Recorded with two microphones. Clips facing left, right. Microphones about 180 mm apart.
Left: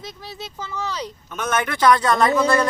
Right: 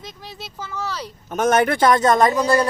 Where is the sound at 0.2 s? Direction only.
10° right (ahead or behind).